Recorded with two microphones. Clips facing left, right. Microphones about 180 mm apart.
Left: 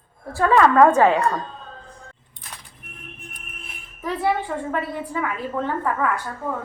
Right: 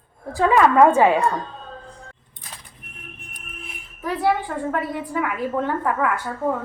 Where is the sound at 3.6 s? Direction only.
Centre (ahead or behind).